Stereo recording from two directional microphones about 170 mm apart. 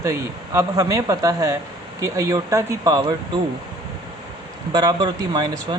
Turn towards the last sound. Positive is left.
turn(degrees=-25)  # may be behind; listen again after turning